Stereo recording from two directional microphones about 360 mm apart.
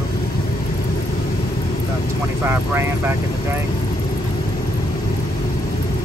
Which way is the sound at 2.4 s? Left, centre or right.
Centre.